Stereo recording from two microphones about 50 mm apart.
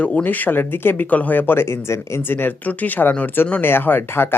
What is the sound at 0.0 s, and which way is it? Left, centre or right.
Speech, left.